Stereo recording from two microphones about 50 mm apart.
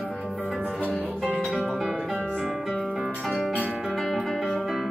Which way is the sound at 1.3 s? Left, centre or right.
Right.